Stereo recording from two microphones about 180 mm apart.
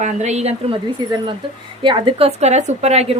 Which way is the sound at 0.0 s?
40° right (ahead or behind).